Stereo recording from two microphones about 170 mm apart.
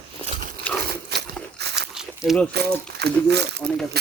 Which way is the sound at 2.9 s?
75° right (ahead or behind).